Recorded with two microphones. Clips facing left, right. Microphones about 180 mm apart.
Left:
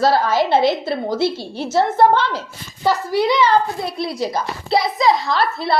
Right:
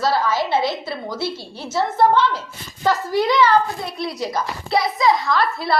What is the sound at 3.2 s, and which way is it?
Speech, 15° left (ahead or behind).